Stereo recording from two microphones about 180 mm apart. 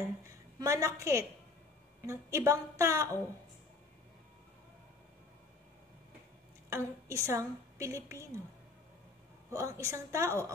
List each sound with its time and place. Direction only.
0.3 s a woman's voice: 15° right (ahead or behind)
6.7 s a woman's voice: 15° right (ahead or behind)
9.5 s a woman's voice: 15° right (ahead or behind)